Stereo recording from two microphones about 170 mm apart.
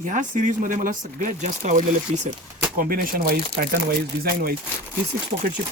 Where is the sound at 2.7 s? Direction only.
60° right (ahead or behind).